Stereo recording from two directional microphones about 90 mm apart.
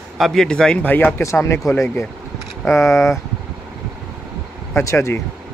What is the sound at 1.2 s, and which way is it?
Speech, 35° left (ahead or behind).